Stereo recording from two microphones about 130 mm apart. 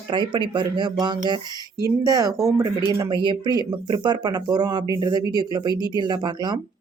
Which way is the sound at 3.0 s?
35° right (ahead or behind).